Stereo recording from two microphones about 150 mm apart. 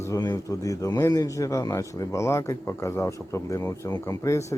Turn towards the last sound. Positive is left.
turn(degrees=20)  # may be behind; listen again after turning